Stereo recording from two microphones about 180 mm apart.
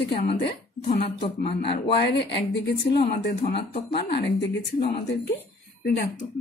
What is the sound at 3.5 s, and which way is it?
Speech, 35° left (ahead or behind).